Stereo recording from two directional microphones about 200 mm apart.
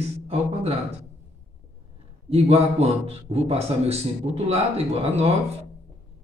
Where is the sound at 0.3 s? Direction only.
30° right (ahead or behind).